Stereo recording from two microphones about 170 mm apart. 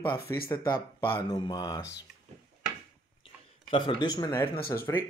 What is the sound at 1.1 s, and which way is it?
Speech, 25° left (ahead or behind).